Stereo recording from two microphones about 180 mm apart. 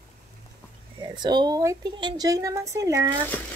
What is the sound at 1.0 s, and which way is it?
A woman's voice, 25° right (ahead or behind).